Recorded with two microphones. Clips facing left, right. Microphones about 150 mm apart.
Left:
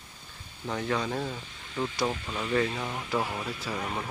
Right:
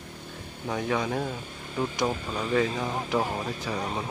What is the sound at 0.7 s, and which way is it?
Speech, 15° right (ahead or behind).